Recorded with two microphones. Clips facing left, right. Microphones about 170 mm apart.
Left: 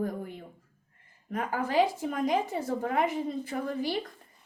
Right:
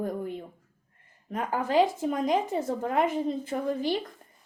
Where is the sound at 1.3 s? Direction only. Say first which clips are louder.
Right 2 dB; 20° right (ahead or behind).